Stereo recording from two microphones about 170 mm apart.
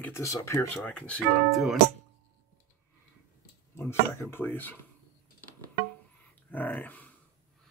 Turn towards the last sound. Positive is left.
turn(degrees=10)  # may be behind; listen again after turning